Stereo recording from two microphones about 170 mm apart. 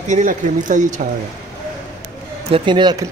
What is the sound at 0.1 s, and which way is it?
Speech, 50° right (ahead or behind).